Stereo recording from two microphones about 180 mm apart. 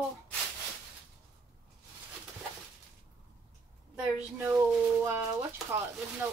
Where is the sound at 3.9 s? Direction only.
10° right (ahead or behind).